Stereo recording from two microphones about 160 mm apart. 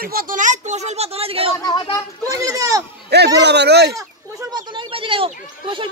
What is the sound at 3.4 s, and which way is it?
Speech, 90° right.